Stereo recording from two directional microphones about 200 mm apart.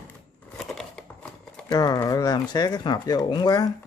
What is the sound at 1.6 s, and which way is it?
Speech, 20° left (ahead or behind).